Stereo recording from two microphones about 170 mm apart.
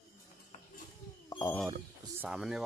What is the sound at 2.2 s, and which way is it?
Speech, 5° right (ahead or behind).